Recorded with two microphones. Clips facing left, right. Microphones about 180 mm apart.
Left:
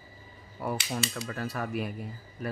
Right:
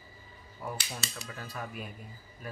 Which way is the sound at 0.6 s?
70° left (ahead or behind).